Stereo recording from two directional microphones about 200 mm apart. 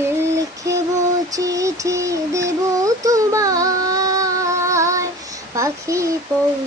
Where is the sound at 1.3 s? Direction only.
15° right (ahead or behind).